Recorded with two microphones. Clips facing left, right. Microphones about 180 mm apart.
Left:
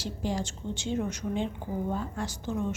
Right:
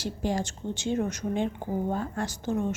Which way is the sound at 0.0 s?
55° right (ahead or behind).